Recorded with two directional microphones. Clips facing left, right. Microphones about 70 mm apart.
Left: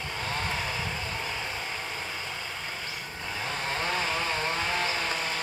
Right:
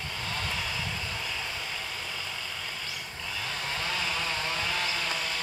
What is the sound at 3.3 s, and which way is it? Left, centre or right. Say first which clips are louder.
Chainsaw: left 3 dB; left.